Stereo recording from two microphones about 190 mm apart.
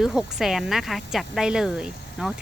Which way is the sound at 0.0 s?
Centre (ahead or behind).